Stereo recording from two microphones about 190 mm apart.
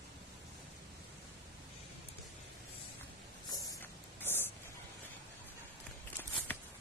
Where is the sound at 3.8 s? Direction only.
10° left (ahead or behind).